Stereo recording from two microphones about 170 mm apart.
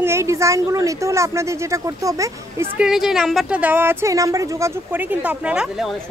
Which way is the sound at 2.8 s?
Centre (ahead or behind).